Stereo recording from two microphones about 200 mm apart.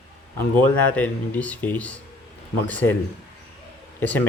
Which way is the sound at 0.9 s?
5° left (ahead or behind).